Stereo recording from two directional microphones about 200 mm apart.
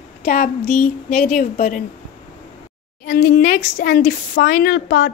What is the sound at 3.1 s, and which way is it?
Speech, 40° left (ahead or behind).